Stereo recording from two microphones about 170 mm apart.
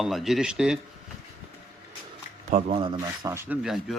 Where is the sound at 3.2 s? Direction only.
15° right (ahead or behind).